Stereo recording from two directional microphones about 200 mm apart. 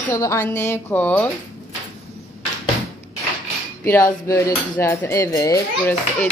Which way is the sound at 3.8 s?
15° left (ahead or behind).